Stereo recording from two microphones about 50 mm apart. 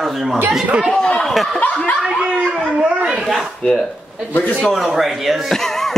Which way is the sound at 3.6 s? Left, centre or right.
Left.